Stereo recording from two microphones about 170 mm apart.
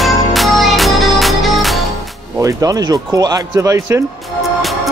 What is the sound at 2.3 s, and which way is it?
Speech, 20° right (ahead or behind).